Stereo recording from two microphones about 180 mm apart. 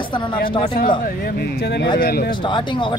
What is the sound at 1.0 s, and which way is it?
Speech, 60° left (ahead or behind).